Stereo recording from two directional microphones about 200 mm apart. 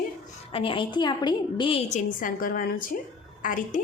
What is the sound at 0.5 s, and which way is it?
A woman's voice, 25° left (ahead or behind).